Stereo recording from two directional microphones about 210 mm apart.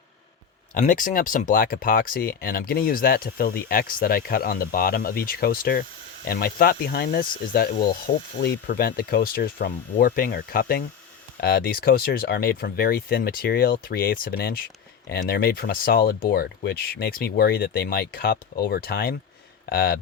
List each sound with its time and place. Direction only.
0.7 s speech: 40° left (ahead or behind)